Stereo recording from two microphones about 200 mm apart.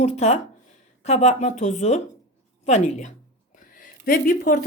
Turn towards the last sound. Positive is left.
turn(degrees=45)  # may be behind; listen again after turning